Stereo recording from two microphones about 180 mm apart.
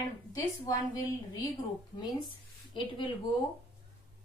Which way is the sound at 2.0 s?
25° left (ahead or behind).